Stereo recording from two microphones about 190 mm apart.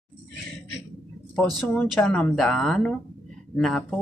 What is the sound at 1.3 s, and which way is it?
Speech, 5° left (ahead or behind).